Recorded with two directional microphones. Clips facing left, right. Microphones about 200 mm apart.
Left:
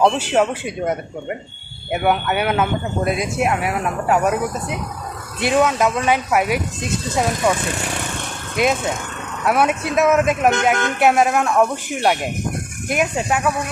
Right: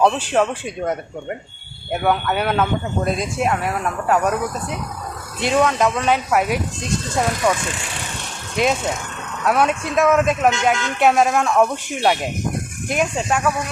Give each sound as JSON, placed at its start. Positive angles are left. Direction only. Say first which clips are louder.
{"t": 0.0, "sound": "speech", "louder": "left 1 dB", "side_deg": 5}
{"t": 8.5, "sound": "speech", "louder": "left 1 dB", "side_deg": 5}
{"t": 10.5, "sound": "speech", "louder": "left 2 dB", "side_deg": 55}
{"t": 11.0, "sound": "speech", "louder": "even", "side_deg": 5}